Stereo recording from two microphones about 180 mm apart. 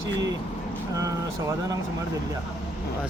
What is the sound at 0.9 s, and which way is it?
Speech, 20° right (ahead or behind).